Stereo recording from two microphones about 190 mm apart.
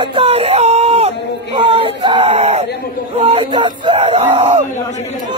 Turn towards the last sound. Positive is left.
turn(degrees=-25)  # may be behind; listen again after turning